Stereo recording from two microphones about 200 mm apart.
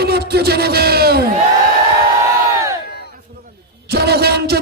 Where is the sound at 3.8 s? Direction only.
55° right (ahead or behind).